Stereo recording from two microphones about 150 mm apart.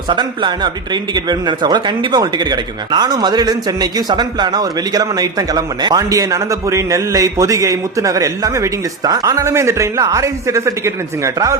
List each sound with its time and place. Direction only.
0.1 s speech: 30° right (ahead or behind)